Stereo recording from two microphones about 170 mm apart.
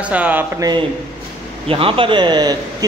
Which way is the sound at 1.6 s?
30° right (ahead or behind).